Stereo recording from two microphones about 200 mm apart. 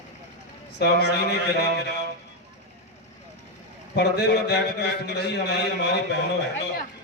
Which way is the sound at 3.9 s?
55° left (ahead or behind).